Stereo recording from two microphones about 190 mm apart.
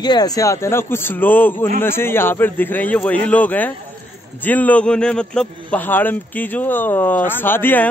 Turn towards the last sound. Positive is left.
turn(degrees=10)  # may be behind; listen again after turning